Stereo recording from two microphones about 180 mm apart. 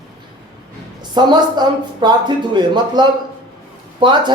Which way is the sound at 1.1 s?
25° right (ahead or behind).